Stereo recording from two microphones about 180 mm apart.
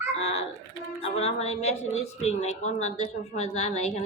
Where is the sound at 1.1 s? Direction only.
35° left (ahead or behind).